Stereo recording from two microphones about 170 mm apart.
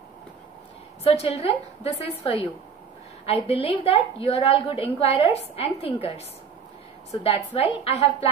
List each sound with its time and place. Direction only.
1.0 s a woman's voice: 35° left (ahead or behind)
7.2 s a woman's voice: 35° left (ahead or behind)